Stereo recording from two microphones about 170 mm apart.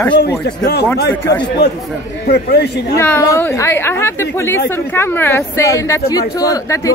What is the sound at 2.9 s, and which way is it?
A woman's voice, 15° left (ahead or behind).